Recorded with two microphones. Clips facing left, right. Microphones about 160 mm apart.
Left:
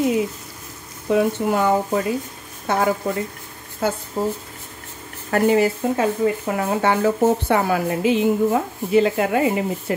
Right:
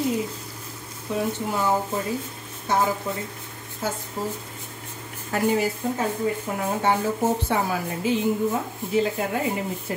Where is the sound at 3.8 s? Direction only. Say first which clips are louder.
Left 6 dB; 65° left (ahead or behind).